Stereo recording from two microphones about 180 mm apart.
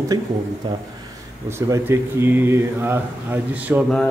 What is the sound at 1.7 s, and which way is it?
Speech, 15° right (ahead or behind).